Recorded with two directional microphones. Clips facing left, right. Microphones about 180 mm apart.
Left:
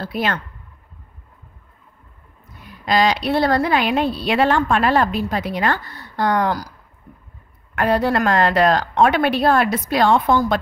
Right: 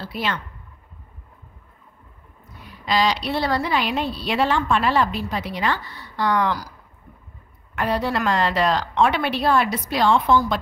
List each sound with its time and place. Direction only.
0.0 s a woman's voice: 50° left (ahead or behind)
2.8 s a woman's voice: 50° left (ahead or behind)
7.7 s a woman's voice: 55° left (ahead or behind)